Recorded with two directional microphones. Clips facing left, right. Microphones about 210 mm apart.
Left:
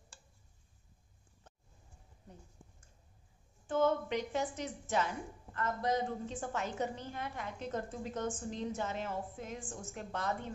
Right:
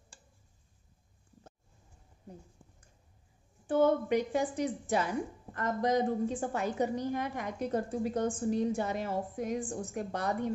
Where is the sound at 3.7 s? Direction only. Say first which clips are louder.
Right 5 dB; 15° right (ahead or behind).